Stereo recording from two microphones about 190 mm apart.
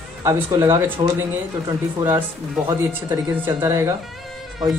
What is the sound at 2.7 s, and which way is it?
Speech, 15° right (ahead or behind).